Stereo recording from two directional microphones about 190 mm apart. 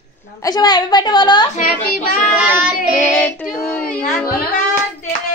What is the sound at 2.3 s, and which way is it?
Child singing, 5° right (ahead or behind).